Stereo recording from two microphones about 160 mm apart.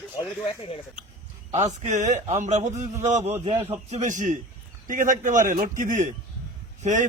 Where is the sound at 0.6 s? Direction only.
35° left (ahead or behind).